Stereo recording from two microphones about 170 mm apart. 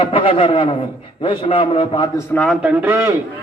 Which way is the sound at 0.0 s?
30° left (ahead or behind).